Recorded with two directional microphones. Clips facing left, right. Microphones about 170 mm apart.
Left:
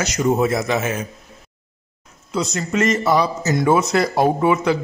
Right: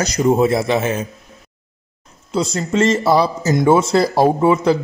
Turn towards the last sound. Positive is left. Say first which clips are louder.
# right 3 dB
turn(degrees=-30)  # may be behind; listen again after turning